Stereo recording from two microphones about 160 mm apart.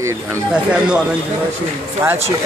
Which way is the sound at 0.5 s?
5° right (ahead or behind).